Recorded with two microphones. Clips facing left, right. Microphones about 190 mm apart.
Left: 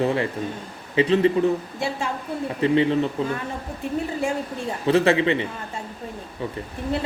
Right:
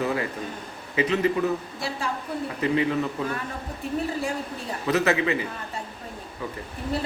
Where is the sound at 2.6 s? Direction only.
30° left (ahead or behind).